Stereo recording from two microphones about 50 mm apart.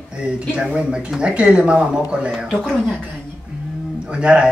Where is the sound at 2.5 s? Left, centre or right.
Centre.